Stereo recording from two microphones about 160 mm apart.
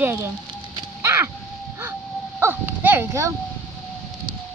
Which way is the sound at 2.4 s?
15° right (ahead or behind).